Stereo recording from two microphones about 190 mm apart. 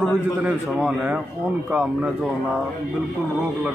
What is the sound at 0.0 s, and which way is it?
A man's voice, 5° right (ahead or behind).